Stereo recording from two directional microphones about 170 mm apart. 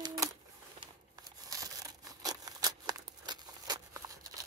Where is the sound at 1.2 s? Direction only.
20° right (ahead or behind).